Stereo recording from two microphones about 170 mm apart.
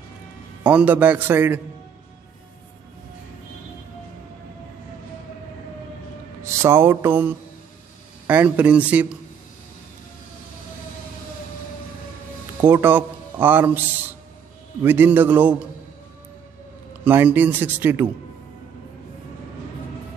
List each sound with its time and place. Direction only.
0.7 s a man's voice: 10° right (ahead or behind)
6.4 s music: 15° right (ahead or behind)
8.3 s a man's voice: 10° right (ahead or behind)
12.6 s a man's voice: 10° right (ahead or behind)
17.0 s a man's voice: 10° right (ahead or behind)